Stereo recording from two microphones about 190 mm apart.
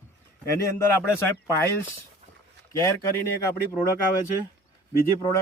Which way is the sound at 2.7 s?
15° left (ahead or behind).